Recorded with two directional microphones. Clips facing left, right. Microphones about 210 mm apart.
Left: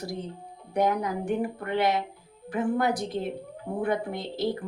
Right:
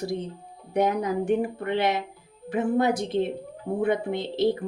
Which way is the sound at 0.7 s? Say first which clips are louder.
Right 2 dB; 25° right (ahead or behind).